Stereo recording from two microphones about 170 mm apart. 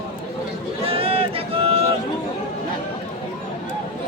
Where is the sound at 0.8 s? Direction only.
35° right (ahead or behind).